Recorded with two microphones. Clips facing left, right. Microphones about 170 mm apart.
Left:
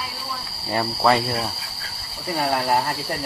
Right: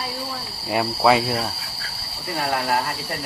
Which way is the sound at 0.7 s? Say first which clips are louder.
Right 2 dB; 5° right (ahead or behind).